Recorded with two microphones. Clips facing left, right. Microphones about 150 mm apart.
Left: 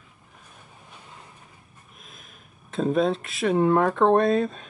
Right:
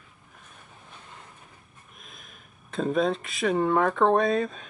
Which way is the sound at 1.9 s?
Centre (ahead or behind).